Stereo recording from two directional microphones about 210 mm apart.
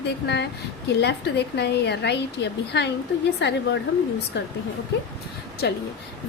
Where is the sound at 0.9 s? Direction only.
55° left (ahead or behind).